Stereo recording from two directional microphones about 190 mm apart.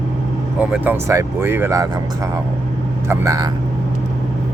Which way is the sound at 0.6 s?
10° right (ahead or behind).